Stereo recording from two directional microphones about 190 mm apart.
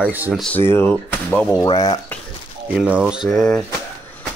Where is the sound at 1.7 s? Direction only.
20° left (ahead or behind).